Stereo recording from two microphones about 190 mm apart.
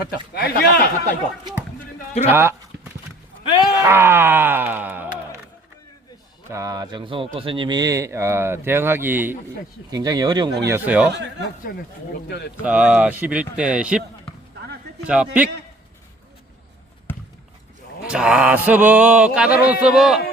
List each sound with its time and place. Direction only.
0.1 s speech: 55° left (ahead or behind)
2.2 s a sound: 15° right (ahead or behind)
3.5 s groan: 20° left (ahead or behind)
3.8 s speech: 10° right (ahead or behind)
6.5 s speech: 15° right (ahead or behind)
11.7 s speech: 60° left (ahead or behind)
12.6 s speech: 5° right (ahead or behind)
15.0 s a sound: 5° right (ahead or behind)
18.0 s a sound: 5° right (ahead or behind)